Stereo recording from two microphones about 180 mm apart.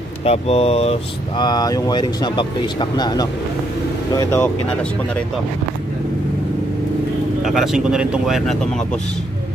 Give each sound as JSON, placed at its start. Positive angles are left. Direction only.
{"t": 0.2, "sound": "speech", "side_deg": 35}
{"t": 1.4, "sound": "speech", "side_deg": 20}
{"t": 7.4, "sound": "speech", "side_deg": 0}